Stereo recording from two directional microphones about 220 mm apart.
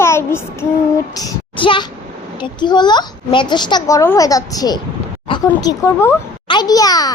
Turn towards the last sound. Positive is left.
turn(degrees=15)  # may be behind; listen again after turning